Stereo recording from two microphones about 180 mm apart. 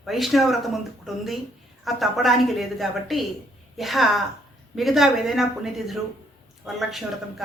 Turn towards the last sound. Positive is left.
turn(degrees=0)  # may be behind; listen again after turning